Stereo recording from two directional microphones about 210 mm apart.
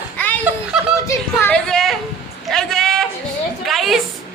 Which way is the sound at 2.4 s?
Centre (ahead or behind).